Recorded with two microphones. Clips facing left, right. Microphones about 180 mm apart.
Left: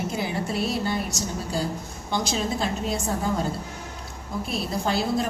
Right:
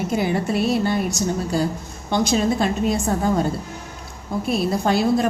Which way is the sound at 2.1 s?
55° right (ahead or behind).